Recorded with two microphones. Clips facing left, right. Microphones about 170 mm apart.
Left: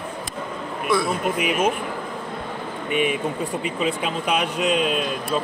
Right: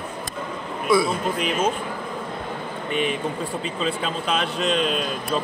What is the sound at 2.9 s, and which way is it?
Speech, 10° left (ahead or behind).